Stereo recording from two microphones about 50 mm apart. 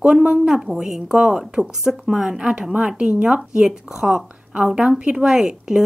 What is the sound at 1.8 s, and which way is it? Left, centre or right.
Speech, centre.